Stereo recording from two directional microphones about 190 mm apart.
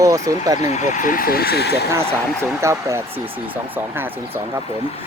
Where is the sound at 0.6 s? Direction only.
35° left (ahead or behind); by 1.8 s 60° left (ahead or behind).